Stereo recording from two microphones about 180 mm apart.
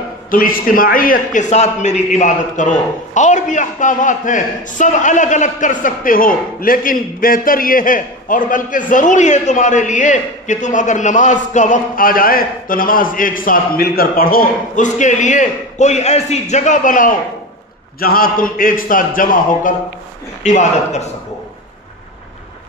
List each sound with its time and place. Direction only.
0.3 s a man's voice: 50° left (ahead or behind)